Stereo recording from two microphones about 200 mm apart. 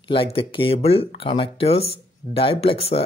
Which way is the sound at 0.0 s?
25° left (ahead or behind).